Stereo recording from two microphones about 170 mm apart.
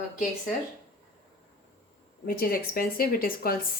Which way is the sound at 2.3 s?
60° left (ahead or behind).